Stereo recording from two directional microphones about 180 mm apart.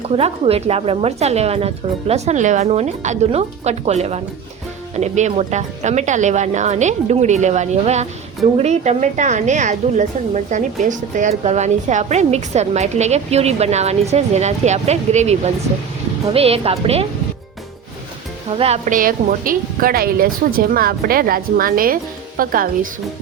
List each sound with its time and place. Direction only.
0.1 s a woman's voice: 35° right (ahead or behind)
18.5 s a woman's voice: 35° right (ahead or behind)
18.9 s speech: 50° right (ahead or behind)